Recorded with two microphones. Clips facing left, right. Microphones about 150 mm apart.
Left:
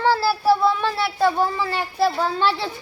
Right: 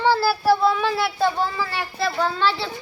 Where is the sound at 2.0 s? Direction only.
35° left (ahead or behind).